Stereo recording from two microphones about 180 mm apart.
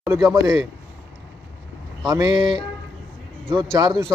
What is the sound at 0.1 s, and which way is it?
Speech, 15° right (ahead or behind).